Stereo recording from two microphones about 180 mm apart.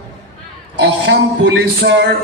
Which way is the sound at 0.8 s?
80° right.